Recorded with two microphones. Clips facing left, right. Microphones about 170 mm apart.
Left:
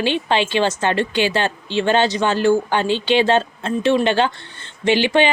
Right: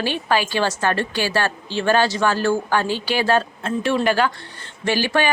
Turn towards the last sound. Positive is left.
turn(degrees=20)  # may be behind; listen again after turning